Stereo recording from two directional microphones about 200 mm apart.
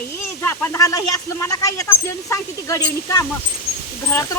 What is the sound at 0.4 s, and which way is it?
Speech, 10° left (ahead or behind).